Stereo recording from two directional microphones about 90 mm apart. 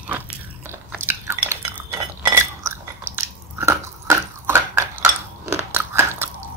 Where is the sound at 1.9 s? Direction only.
30° right (ahead or behind).